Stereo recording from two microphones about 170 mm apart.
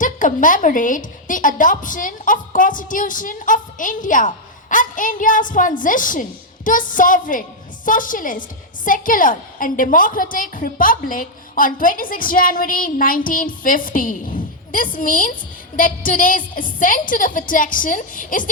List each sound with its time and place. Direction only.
0.0 s a woman's voice: 50° left (ahead or behind)